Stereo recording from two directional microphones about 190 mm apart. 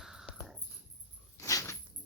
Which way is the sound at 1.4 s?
15° left (ahead or behind).